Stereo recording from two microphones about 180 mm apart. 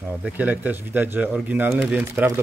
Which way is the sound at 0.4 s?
10° right (ahead or behind).